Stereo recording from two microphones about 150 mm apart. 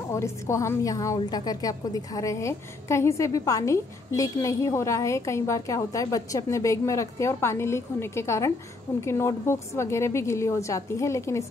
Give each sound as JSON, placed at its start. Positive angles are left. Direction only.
{"t": 0.1, "sound": "a woman's voice", "side_deg": 20}